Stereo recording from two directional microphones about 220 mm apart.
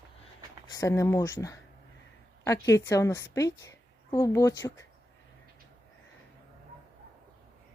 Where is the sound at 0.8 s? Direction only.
15° left (ahead or behind).